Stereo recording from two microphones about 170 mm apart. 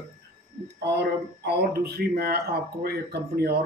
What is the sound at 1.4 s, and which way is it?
Speech, 70° right (ahead or behind).